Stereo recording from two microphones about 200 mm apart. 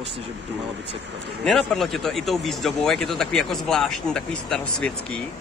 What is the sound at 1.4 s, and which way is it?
Speech, 5° left (ahead or behind).